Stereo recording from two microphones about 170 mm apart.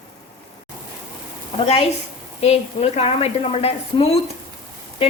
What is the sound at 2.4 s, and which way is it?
A woman's voice, 35° left (ahead or behind).